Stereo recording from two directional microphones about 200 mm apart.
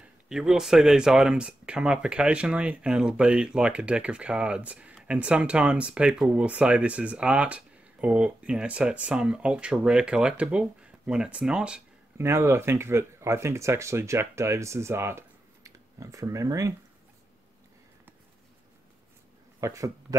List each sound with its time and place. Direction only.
0.3 s speech: 5° right (ahead or behind)
19.6 s speech: 15° right (ahead or behind)